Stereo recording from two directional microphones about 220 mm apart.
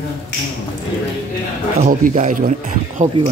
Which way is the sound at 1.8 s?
35° right (ahead or behind).